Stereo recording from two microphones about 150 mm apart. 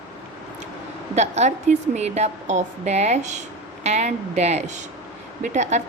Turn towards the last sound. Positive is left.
turn(degrees=-50)  # may be behind; listen again after turning